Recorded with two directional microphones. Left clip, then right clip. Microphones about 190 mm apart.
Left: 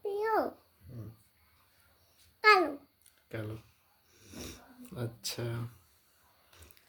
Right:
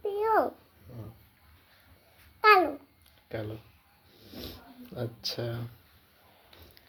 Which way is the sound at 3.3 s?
15° left (ahead or behind).